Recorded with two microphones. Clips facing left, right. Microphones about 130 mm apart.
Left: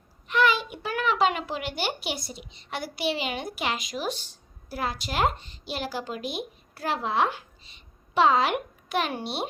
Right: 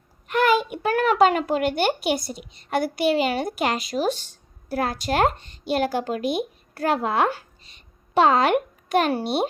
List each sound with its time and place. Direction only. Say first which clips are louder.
0.3 s a child's voice: right 4 dB; 50° right (ahead or behind)